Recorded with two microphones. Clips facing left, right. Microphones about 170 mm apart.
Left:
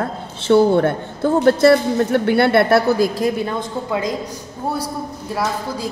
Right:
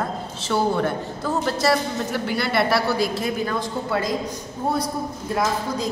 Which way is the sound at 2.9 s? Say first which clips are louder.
Left 6 dB; 40° left (ahead or behind).